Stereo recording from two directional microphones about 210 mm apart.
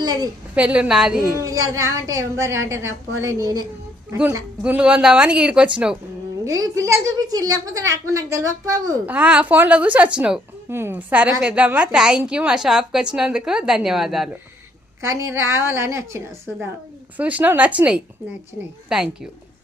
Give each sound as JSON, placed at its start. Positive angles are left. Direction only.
{"t": 0.0, "sound": "a woman's voice", "side_deg": -20}
{"t": 0.5, "sound": "speech", "side_deg": -5}
{"t": 1.4, "sound": "a woman's voice", "side_deg": -15}
{"t": 6.4, "sound": "a woman's voice", "side_deg": -15}
{"t": 15.0, "sound": "a woman's voice", "side_deg": -15}